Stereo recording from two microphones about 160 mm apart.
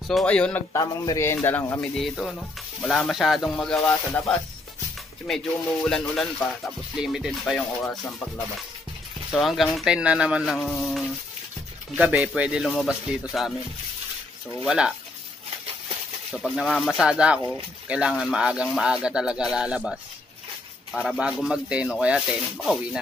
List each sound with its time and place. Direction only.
0.1 s a man's voice: 5° left (ahead or behind)
0.7 s a man's voice: 20° left (ahead or behind)
1.8 s speech: centre (ahead or behind)
9.3 s speech: centre (ahead or behind)
14.6 s speech: 5° right (ahead or behind)
16.3 s speech: centre (ahead or behind)